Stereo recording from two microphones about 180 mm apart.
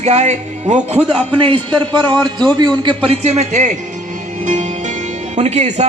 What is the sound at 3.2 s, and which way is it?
Speech, 40° right (ahead or behind).